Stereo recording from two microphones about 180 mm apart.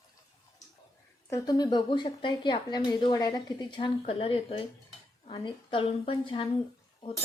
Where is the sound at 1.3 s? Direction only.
20° left (ahead or behind).